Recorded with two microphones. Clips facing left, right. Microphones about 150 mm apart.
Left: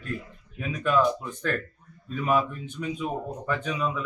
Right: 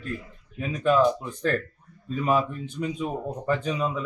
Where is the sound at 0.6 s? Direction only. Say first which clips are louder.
Right 3 dB; 35° right (ahead or behind).